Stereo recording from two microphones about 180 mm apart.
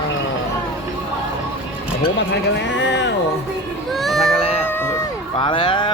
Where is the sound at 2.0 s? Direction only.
80° left.